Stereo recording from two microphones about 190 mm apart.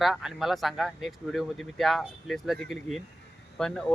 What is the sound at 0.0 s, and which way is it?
Speech, centre (ahead or behind).